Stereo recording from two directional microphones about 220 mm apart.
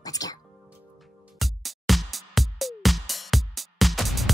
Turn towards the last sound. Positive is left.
turn(degrees=0)  # may be behind; listen again after turning